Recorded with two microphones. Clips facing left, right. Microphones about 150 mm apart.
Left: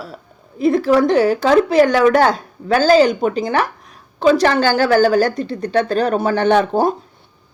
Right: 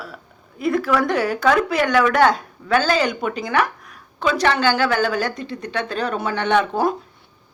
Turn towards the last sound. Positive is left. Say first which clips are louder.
# left 4 dB
turn(degrees=35)  # may be behind; listen again after turning